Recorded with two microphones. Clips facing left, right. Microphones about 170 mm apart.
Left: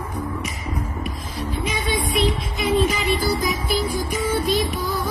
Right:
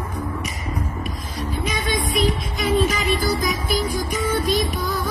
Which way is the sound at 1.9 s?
25° left (ahead or behind).